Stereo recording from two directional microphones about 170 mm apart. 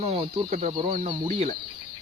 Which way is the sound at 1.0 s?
25° right (ahead or behind).